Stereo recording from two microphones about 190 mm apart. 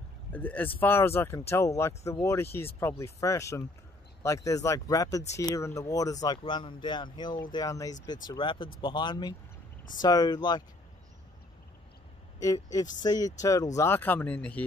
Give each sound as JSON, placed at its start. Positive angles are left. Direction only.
{"t": 0.3, "sound": "speech", "side_deg": 10}
{"t": 12.4, "sound": "a woman's voice", "side_deg": 15}